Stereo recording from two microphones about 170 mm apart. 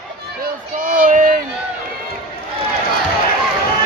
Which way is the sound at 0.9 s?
50° right (ahead or behind).